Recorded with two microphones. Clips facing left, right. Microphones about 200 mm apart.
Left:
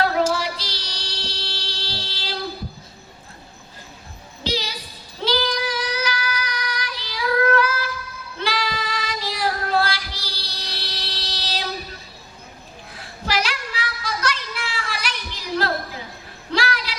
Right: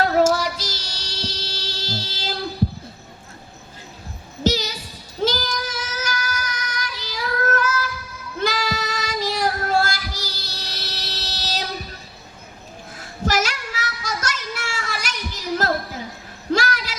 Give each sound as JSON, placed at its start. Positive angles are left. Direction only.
{"t": 0.0, "sound": "child singing", "side_deg": -45}
{"t": 4.4, "sound": "music", "side_deg": -45}
{"t": 5.2, "sound": "child singing", "side_deg": -45}
{"t": 13.0, "sound": "child singing", "side_deg": -45}
{"t": 16.5, "sound": "a sound", "side_deg": -45}